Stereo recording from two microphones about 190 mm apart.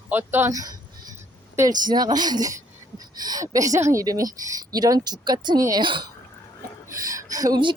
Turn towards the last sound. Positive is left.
turn(degrees=-20)  # may be behind; listen again after turning